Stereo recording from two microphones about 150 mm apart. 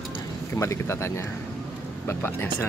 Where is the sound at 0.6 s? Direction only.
20° left (ahead or behind).